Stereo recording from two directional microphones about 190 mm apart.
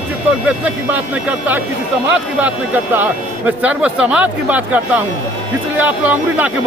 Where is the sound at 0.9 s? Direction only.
10° right (ahead or behind).